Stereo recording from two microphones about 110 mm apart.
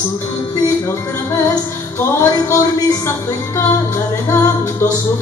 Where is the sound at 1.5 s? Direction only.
30° left (ahead or behind).